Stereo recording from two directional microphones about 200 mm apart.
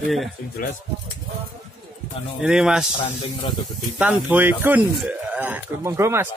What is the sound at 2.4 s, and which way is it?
Speech, 5° right (ahead or behind).